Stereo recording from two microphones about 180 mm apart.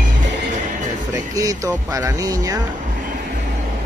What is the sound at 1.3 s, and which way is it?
Speech, 20° right (ahead or behind).